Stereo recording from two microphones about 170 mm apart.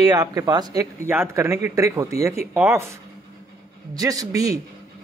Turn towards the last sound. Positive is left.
turn(degrees=-20)  # may be behind; listen again after turning